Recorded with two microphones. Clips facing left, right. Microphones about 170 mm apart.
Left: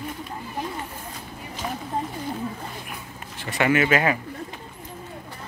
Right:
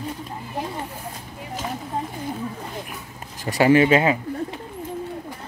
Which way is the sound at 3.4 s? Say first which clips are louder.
Right 5 dB; 35° right (ahead or behind).